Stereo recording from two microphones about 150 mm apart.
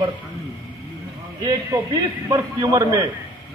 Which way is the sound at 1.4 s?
25° right (ahead or behind).